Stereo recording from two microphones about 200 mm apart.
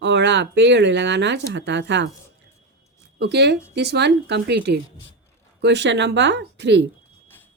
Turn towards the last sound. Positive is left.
turn(degrees=-60)  # may be behind; listen again after turning